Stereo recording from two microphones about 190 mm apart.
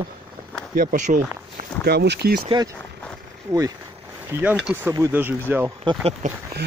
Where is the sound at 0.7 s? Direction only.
45° right (ahead or behind).